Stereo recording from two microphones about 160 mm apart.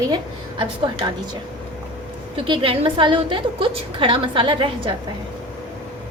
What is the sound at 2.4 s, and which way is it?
A woman's voice, 30° right (ahead or behind).